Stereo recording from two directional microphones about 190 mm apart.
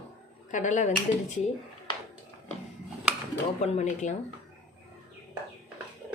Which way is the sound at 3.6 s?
35° left (ahead or behind).